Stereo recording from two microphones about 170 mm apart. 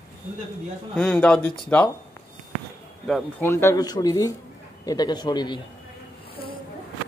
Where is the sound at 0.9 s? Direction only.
5° left (ahead or behind).